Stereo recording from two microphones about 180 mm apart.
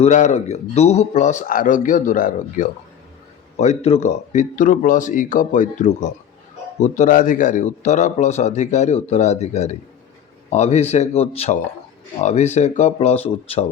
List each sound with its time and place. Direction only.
0.0 s a man's voice: 40° left (ahead or behind)
3.6 s a man's voice: 35° left (ahead or behind)